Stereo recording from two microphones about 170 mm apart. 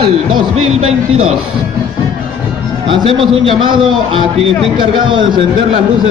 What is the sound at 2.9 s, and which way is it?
A man's voice, 30° right (ahead or behind).